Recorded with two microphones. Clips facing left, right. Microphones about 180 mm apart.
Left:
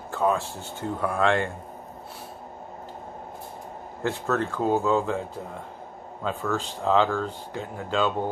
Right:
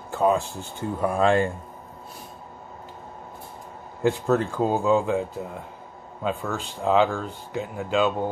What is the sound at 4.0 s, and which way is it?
Speech, 15° right (ahead or behind).